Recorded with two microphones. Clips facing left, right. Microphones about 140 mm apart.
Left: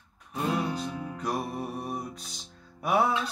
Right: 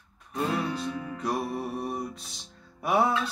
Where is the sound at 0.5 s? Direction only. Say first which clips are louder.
Even; 20° left (ahead or behind).